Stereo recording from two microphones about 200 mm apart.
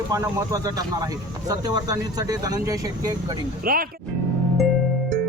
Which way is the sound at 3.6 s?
45° right (ahead or behind).